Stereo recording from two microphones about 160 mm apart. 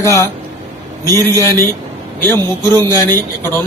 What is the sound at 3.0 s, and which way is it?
Speech, 15° left (ahead or behind).